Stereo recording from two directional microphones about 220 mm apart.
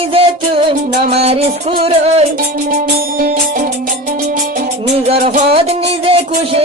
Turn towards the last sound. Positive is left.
turn(degrees=-25)  # may be behind; listen again after turning